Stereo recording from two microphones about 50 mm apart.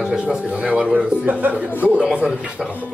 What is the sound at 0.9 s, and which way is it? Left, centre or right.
Speech, right.